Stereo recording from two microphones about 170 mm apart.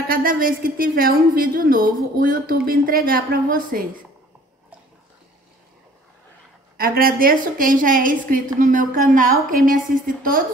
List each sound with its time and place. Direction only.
0.1 s a woman's voice: 55° right (ahead or behind)
6.8 s a woman's voice: 60° right (ahead or behind)